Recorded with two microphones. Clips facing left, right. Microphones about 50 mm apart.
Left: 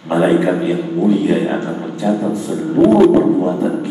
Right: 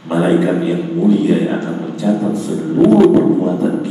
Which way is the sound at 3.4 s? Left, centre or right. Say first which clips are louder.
Right 1 dB; centre.